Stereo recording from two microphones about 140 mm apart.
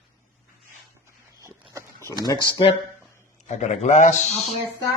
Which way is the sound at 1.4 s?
20° right (ahead or behind).